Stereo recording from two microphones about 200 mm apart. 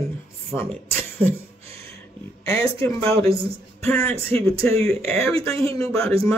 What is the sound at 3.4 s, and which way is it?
Speech, 15° left (ahead or behind).